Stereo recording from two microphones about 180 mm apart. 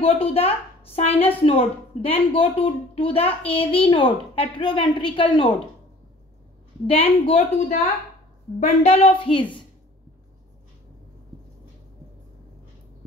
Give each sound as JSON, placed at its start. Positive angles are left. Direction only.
{"t": 0.0, "sound": "a woman's voice", "side_deg": 35}
{"t": 6.9, "sound": "a woman's voice", "side_deg": 30}